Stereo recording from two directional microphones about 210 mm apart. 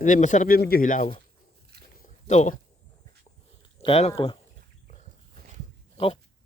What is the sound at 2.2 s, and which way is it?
Speech, 35° left (ahead or behind).